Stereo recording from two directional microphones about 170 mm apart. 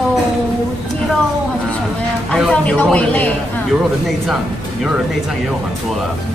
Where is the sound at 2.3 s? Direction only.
5° left (ahead or behind).